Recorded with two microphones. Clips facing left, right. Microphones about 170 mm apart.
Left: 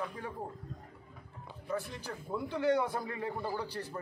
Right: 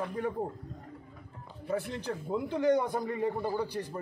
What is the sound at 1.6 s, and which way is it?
Speech, 60° right (ahead or behind).